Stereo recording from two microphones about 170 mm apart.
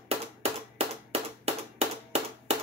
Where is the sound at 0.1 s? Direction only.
40° right (ahead or behind).